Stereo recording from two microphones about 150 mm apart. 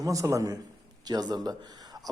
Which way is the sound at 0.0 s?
20° right (ahead or behind).